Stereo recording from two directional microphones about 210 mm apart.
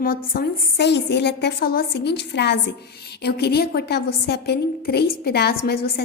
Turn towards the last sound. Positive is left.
turn(degrees=50)  # may be behind; listen again after turning